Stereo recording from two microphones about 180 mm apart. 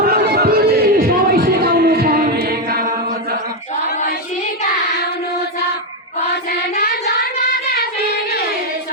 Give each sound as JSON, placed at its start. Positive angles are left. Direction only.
{"t": 0.0, "sound": "music", "side_deg": -55}
{"t": 6.5, "sound": "child singing", "side_deg": 60}